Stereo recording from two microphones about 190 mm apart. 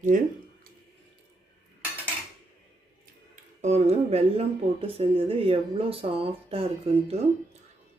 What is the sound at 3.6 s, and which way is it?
Speech, 35° right (ahead or behind).